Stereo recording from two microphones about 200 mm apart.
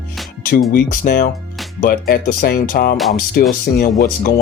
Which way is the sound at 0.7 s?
50° left (ahead or behind).